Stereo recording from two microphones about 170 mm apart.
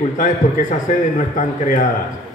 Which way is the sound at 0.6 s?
50° left (ahead or behind).